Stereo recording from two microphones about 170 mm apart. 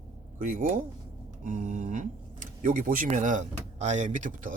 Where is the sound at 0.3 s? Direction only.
50° right (ahead or behind).